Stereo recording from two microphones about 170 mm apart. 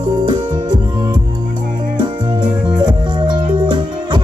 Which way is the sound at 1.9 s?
25° right (ahead or behind).